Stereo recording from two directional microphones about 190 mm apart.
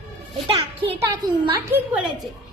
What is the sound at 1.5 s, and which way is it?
Speech, 10° right (ahead or behind).